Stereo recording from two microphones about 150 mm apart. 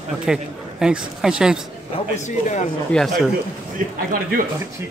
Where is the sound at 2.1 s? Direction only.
50° left (ahead or behind).